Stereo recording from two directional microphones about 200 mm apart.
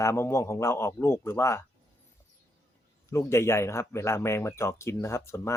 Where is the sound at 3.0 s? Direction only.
15° left (ahead or behind).